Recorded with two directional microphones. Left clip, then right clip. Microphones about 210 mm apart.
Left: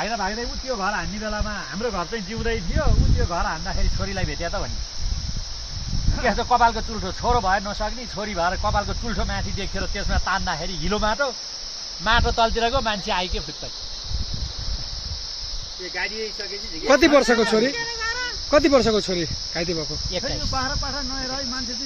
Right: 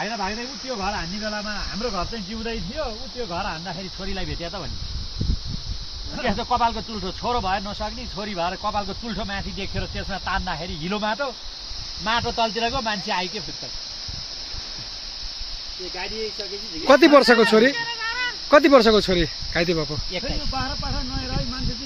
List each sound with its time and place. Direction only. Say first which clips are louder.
0.0 s speech: left 2 dB; 5° right (ahead or behind)
1.9 s speech: left 3 dB; 10° left (ahead or behind)
3.3 s speech: left 3 dB; 10° right (ahead or behind)
4.1 s speech: left 2 dB; centre (ahead or behind)
6.2 s speech: left 3 dB; 5° right (ahead or behind)
16.8 s speech: right 3 dB; 35° right (ahead or behind)
17.7 s a sound: even; 70° left (ahead or behind)
18.5 s speech: right 3 dB; 35° right (ahead or behind)